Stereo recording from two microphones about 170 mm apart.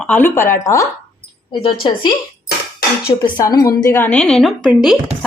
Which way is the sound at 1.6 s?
30° left (ahead or behind).